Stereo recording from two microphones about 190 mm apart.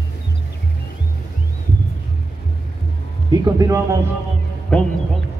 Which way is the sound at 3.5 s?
20° right (ahead or behind).